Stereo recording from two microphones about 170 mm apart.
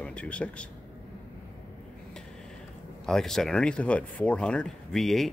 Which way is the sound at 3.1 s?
5° left (ahead or behind).